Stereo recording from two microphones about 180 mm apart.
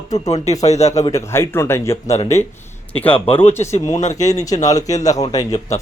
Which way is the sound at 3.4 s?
35° left (ahead or behind).